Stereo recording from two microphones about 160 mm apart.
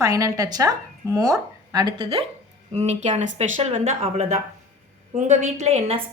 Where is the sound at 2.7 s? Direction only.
45° right (ahead or behind).